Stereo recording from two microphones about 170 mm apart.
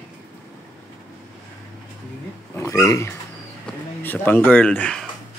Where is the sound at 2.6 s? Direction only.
20° left (ahead or behind).